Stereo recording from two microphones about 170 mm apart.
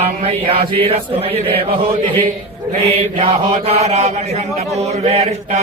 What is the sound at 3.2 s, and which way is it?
A man's voice, 35° right (ahead or behind).